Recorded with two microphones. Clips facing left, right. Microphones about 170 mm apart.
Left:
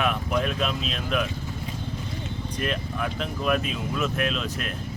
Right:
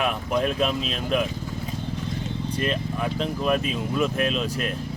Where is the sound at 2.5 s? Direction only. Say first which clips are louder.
Right 2 dB; 30° right (ahead or behind).